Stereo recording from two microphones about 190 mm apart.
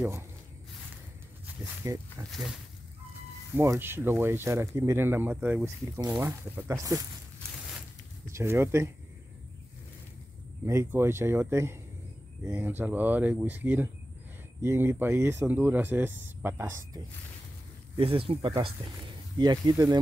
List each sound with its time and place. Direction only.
1.6 s speech: 10° right (ahead or behind)
3.5 s speech: 10° right (ahead or behind)
8.3 s speech: 15° right (ahead or behind)
10.6 s speech: 15° right (ahead or behind)
17.9 s speech: 30° right (ahead or behind)